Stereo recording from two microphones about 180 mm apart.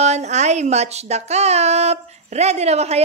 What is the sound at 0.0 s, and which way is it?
Speech, 40° right (ahead or behind).